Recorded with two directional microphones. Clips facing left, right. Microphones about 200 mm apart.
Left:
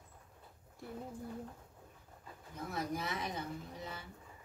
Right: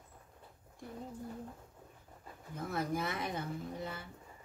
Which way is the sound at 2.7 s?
50° right (ahead or behind).